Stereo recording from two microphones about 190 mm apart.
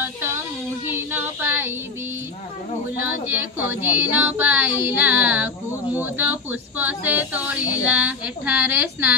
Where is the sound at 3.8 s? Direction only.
10° right (ahead or behind).